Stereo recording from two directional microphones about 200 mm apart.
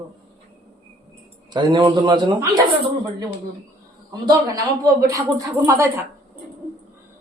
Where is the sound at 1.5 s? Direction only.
20° right (ahead or behind).